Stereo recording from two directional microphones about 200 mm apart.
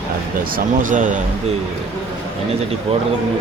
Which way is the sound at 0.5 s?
40° right (ahead or behind).